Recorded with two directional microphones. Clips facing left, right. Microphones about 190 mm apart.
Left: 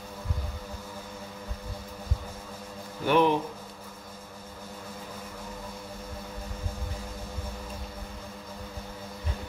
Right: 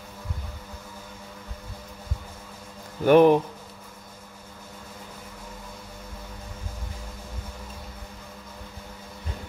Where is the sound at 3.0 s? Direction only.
45° right (ahead or behind).